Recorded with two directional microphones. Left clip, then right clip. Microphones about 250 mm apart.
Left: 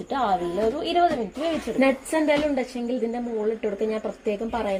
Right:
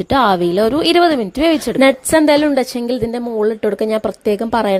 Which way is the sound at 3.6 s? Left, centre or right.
Right.